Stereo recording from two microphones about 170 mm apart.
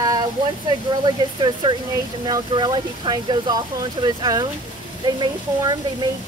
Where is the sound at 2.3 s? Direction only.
25° right (ahead or behind).